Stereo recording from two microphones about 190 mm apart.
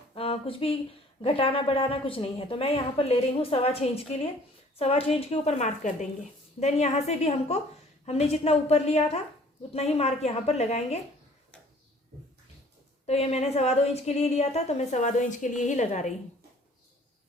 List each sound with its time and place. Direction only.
0.1 s a sound: 30° left (ahead or behind)
1.2 s a woman's voice: 30° left (ahead or behind)
13.1 s a woman's voice: 35° left (ahead or behind)